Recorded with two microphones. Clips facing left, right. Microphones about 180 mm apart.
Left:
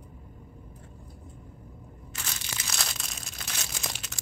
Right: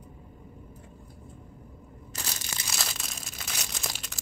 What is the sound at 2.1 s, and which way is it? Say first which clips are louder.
Crushing: right 2 dB; 40° right (ahead or behind).